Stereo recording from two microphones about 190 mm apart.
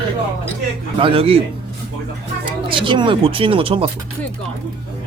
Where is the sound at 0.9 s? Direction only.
30° right (ahead or behind).